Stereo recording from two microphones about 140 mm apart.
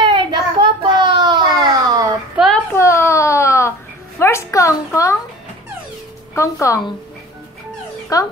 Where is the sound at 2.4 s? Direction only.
5° right (ahead or behind).